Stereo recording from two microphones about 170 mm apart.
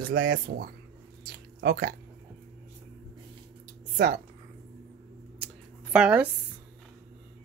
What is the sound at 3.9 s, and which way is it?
Speech, 60° right (ahead or behind).